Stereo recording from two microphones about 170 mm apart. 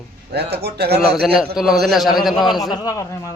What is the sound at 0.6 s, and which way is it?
Speech, 70° right (ahead or behind).